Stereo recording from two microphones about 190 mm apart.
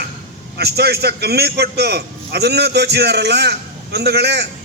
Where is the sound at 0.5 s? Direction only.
60° right (ahead or behind).